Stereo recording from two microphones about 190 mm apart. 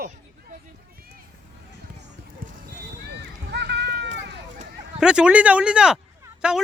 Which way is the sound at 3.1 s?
65° right (ahead or behind).